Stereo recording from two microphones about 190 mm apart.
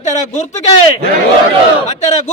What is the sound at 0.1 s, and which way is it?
Speech, 40° left (ahead or behind).